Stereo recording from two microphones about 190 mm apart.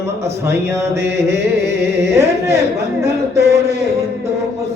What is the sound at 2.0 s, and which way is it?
Music, 15° right (ahead or behind).